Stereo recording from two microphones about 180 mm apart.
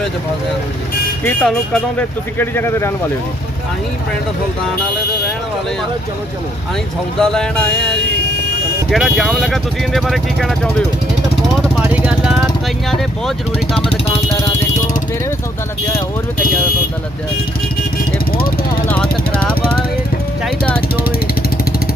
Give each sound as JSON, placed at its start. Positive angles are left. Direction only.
{"t": 1.2, "sound": "speech", "side_deg": 5}
{"t": 7.2, "sound": "speech", "side_deg": 5}
{"t": 11.8, "sound": "vehicle", "side_deg": -5}
{"t": 12.9, "sound": "speech", "side_deg": 0}
{"t": 13.9, "sound": "vehicle", "side_deg": 30}
{"t": 18.3, "sound": "vehicle", "side_deg": 55}
{"t": 20.4, "sound": "speech", "side_deg": 5}